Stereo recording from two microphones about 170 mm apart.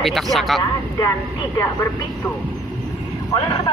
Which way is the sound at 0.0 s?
Centre (ahead or behind).